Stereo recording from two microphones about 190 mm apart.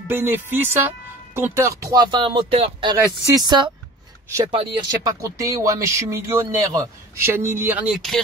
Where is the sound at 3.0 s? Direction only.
15° right (ahead or behind).